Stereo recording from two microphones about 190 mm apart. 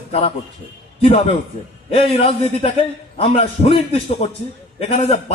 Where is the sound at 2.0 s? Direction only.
30° left (ahead or behind).